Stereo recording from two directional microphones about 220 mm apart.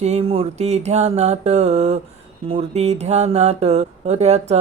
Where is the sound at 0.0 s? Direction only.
30° right (ahead or behind).